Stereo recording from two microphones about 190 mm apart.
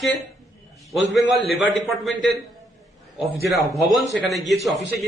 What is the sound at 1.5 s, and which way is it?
A man's voice, centre (ahead or behind).